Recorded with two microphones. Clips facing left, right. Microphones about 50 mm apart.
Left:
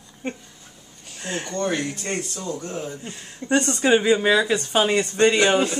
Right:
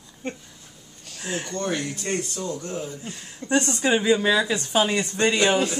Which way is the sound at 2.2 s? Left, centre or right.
Centre.